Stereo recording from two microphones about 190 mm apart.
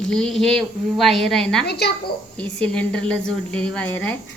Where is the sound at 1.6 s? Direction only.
60° left (ahead or behind).